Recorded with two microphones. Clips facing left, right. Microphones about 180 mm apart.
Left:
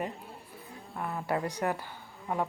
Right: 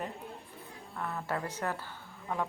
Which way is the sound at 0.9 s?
15° left (ahead or behind).